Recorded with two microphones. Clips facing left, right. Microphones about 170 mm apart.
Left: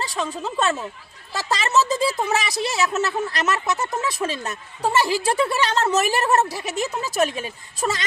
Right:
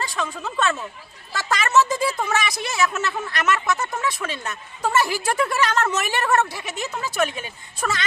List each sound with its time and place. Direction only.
0.0 s speech: 35° left (ahead or behind)